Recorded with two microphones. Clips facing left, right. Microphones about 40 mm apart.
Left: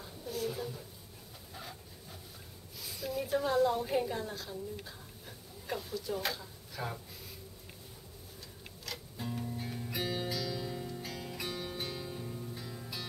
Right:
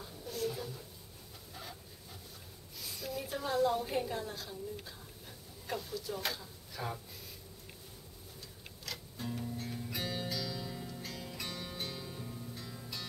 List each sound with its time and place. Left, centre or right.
0.0 s a sound: centre
1.5 s dog: centre
2.8 s a woman's voice: centre
8.8 s music: centre